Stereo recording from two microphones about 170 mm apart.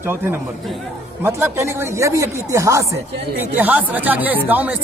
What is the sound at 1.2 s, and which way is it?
Speech, 15° right (ahead or behind).